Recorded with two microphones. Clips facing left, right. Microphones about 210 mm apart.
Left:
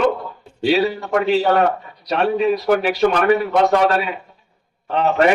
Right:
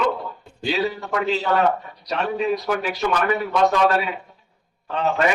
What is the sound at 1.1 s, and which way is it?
A man's voice, 65° left (ahead or behind).